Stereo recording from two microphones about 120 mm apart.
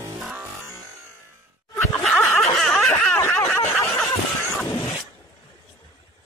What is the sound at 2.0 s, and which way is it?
Snicker, 5° left (ahead or behind).